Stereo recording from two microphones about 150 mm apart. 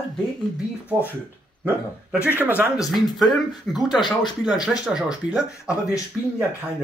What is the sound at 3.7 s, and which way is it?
Speech, centre (ahead or behind).